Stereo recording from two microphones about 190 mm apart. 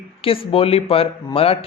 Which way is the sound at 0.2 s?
30° left (ahead or behind).